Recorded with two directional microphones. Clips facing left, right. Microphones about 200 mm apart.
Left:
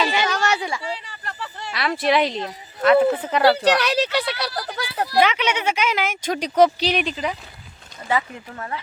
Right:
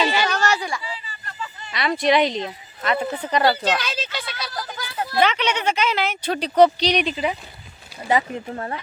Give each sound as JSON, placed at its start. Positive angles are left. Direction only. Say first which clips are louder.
{"t": 0.1, "sound": "a sound", "louder": "even", "side_deg": 20}
{"t": 0.8, "sound": "a sound", "louder": "left 4 dB", "side_deg": 70}
{"t": 1.7, "sound": "speech", "louder": "right 1 dB", "side_deg": 0}
{"t": 3.4, "sound": "speech", "louder": "left 6 dB", "side_deg": 70}
{"t": 5.2, "sound": "a woman's voice", "louder": "right 2 dB", "side_deg": 10}
{"t": 8.0, "sound": "speech", "louder": "right 3 dB", "side_deg": -30}